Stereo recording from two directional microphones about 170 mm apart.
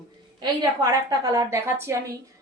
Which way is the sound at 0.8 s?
20° right (ahead or behind).